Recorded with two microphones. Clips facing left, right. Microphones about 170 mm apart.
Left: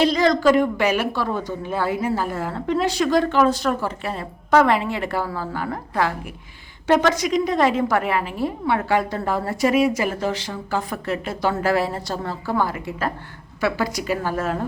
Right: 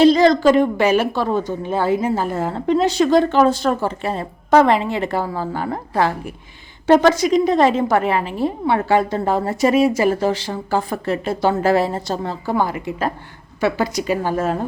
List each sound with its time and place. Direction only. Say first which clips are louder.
0.0 s a woman's voice: right 5 dB; 30° right (ahead or behind)